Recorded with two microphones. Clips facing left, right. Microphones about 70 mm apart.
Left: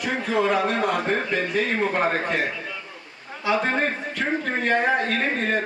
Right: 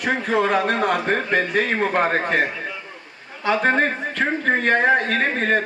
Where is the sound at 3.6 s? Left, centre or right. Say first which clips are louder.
Right 5 dB; right.